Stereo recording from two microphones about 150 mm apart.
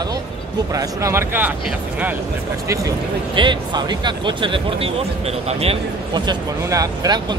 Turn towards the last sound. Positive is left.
turn(degrees=-25)  # may be behind; listen again after turning